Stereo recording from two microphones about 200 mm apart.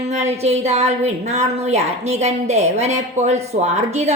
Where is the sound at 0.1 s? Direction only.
35° right (ahead or behind).